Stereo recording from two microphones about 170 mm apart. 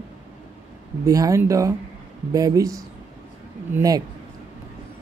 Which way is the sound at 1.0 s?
20° right (ahead or behind).